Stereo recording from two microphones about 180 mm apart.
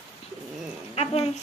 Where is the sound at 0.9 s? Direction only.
35° left (ahead or behind).